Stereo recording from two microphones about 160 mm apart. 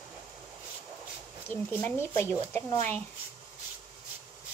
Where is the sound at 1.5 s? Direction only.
15° left (ahead or behind).